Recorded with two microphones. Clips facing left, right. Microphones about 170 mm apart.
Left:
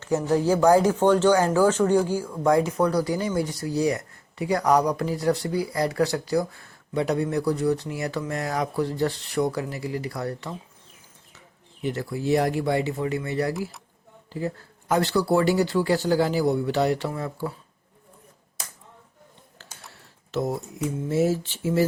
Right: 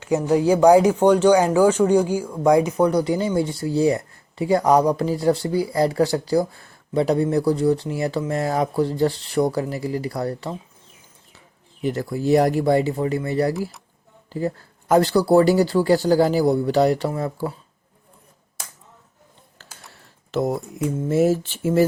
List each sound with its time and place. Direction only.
0.0 s speech: 15° right (ahead or behind); by 10.5 s 35° right (ahead or behind)
11.8 s speech: 40° right (ahead or behind)
13.5 s speech: centre (ahead or behind)
14.3 s speech: 40° right (ahead or behind)
20.3 s speech: 65° right (ahead or behind)
21.0 s speech: 50° right (ahead or behind)